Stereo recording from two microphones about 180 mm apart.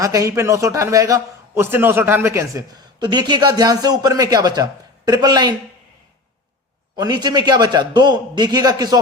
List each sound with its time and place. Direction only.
0.0 s a man's voice: 15° right (ahead or behind)
6.9 s a man's voice: 25° right (ahead or behind)